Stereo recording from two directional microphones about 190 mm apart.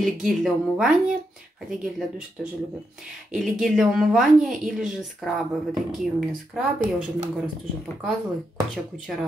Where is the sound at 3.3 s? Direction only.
Centre (ahead or behind).